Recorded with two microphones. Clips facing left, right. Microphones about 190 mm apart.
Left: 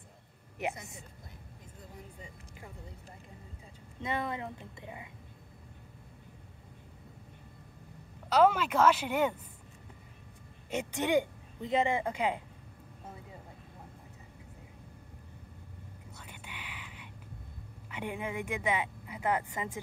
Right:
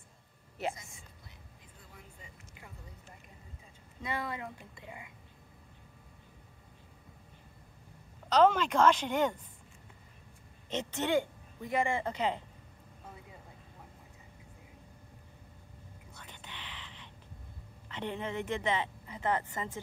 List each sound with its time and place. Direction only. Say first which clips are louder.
0.6 s speech: left 1 dB; 15° left (ahead or behind)
4.0 s speech: left 3 dB; 20° left (ahead or behind)
8.3 s speech: even; 10° left (ahead or behind)
10.7 s speech: left 2 dB; 10° left (ahead or behind)
16.2 s whispering: even; 10° left (ahead or behind)
17.8 s speech: even; 10° left (ahead or behind)